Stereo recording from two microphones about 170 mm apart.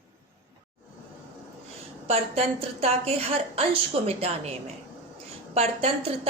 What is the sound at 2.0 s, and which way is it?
A woman's voice, 35° right (ahead or behind).